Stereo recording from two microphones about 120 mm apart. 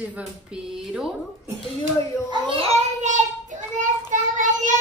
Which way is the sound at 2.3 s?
45° right (ahead or behind).